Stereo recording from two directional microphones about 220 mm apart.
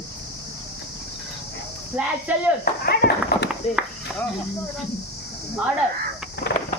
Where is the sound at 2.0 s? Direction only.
5° right (ahead or behind).